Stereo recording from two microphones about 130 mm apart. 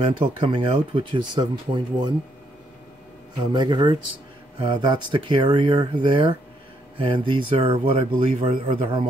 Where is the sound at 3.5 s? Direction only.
35° right (ahead or behind).